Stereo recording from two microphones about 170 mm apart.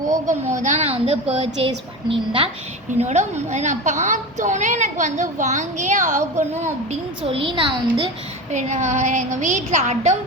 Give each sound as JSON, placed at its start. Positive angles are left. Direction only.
{"t": 0.3, "sound": "a woman's voice", "side_deg": -45}
{"t": 3.0, "sound": "a woman's voice", "side_deg": -40}
{"t": 7.3, "sound": "a woman's voice", "side_deg": -30}
{"t": 8.5, "sound": "a woman's voice", "side_deg": -45}